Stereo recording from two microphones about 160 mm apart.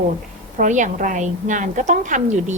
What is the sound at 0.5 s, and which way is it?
A woman's voice, 50° right (ahead or behind).